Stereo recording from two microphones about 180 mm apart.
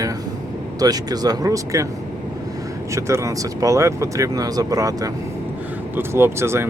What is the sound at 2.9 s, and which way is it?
Speech, 15° right (ahead or behind).